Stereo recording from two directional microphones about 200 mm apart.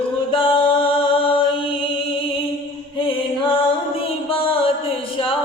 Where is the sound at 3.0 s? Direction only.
25° left (ahead or behind).